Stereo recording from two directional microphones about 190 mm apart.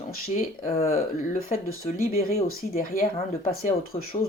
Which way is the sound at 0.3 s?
40° left (ahead or behind).